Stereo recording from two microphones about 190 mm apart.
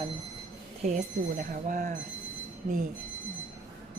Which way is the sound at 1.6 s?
45° right (ahead or behind).